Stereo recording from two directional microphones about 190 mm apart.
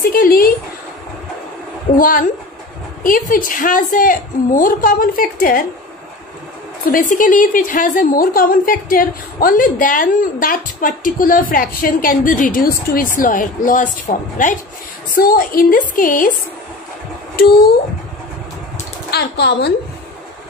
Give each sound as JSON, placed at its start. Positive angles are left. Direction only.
{"t": 0.1, "sound": "a woman's voice", "side_deg": 50}
{"t": 2.0, "sound": "a woman's voice", "side_deg": 45}
{"t": 6.9, "sound": "a woman's voice", "side_deg": 45}
{"t": 19.0, "sound": "speech", "side_deg": 60}